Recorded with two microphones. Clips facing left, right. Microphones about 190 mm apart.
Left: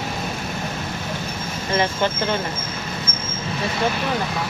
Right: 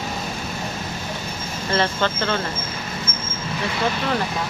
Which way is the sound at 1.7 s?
15° left (ahead or behind).